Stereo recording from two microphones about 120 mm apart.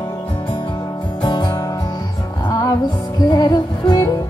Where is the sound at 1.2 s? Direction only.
40° left (ahead or behind).